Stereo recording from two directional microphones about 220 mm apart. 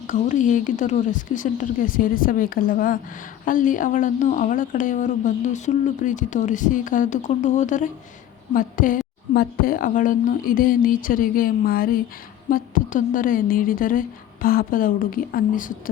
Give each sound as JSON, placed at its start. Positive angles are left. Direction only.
{"t": 0.1, "sound": "speech", "side_deg": 35}